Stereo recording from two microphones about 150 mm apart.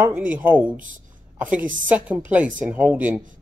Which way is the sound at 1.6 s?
60° right (ahead or behind).